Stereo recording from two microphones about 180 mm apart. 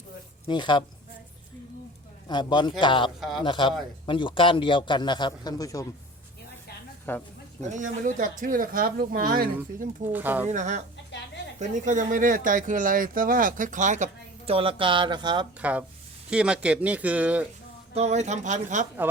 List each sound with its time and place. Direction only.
0.4 s a man's voice: 25° left (ahead or behind)
2.2 s a man's voice: 25° left (ahead or behind)
3.2 s speech: centre (ahead or behind)
3.4 s a man's voice: 25° left (ahead or behind)
7.1 s speech: 10° left (ahead or behind)
7.7 s speech: 45° right (ahead or behind)
10.1 s speech: 10° right (ahead or behind)
10.5 s speech: 40° right (ahead or behind); by 15.4 s 25° right (ahead or behind)
16.3 s speech: 5° right (ahead or behind)
17.9 s speech: 40° right (ahead or behind)